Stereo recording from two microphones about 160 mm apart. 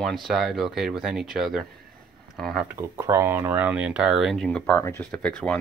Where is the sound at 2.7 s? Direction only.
15° right (ahead or behind); by 4.8 s 5° left (ahead or behind).